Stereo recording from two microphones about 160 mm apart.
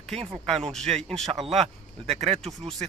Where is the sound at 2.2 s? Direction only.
40° right (ahead or behind).